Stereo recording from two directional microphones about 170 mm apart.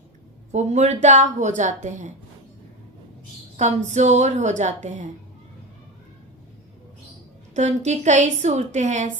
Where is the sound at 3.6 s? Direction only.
45° right (ahead or behind).